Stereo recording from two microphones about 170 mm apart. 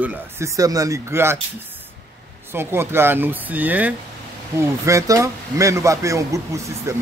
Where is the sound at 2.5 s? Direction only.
15° right (ahead or behind).